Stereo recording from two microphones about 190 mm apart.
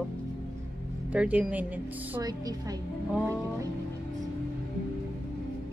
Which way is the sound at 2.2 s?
20° right (ahead or behind).